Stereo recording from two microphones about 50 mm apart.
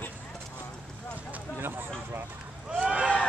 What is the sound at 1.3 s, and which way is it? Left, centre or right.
Speech, right.